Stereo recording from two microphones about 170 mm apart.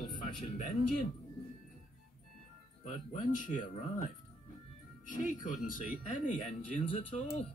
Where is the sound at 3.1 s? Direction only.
50° left (ahead or behind).